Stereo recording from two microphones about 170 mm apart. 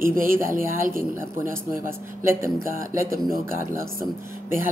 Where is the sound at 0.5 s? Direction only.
55° right (ahead or behind).